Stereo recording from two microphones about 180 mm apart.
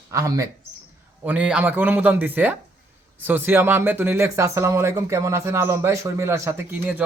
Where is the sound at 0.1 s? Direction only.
15° right (ahead or behind).